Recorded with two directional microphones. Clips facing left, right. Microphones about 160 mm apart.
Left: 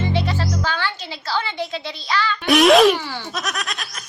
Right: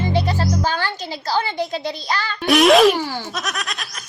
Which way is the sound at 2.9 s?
40° right (ahead or behind).